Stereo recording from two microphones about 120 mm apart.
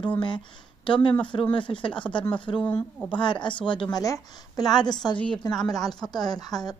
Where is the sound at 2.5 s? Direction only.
10° left (ahead or behind).